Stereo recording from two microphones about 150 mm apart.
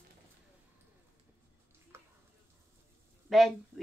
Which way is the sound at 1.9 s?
15° right (ahead or behind).